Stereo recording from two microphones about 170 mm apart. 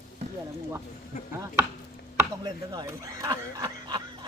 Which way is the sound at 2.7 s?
20° right (ahead or behind).